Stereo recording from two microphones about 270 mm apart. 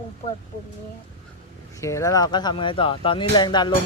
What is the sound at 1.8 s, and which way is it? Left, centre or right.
Speech, centre.